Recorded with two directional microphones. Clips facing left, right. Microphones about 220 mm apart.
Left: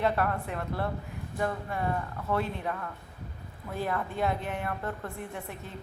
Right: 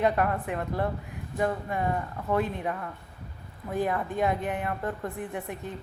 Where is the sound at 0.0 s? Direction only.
15° right (ahead or behind).